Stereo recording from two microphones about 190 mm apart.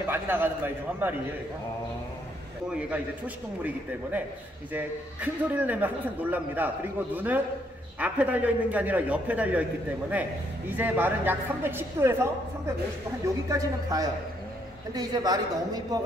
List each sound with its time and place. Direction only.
0.0 s a man's voice: 10° right (ahead or behind)
4.7 s a man's voice: 10° right (ahead or behind)